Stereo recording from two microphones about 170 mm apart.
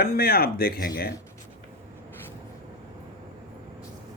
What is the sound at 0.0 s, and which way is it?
Speech, 65° left (ahead or behind).